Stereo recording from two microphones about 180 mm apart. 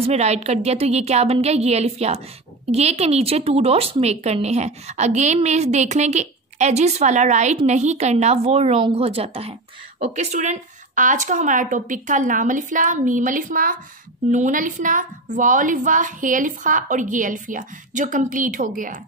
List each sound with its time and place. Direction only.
0.0 s a woman's voice: 35° right (ahead or behind)